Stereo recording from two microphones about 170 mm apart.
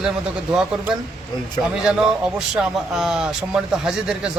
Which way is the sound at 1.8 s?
5° right (ahead or behind).